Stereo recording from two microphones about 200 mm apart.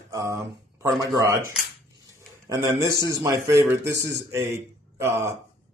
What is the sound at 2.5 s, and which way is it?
Speech, 15° right (ahead or behind).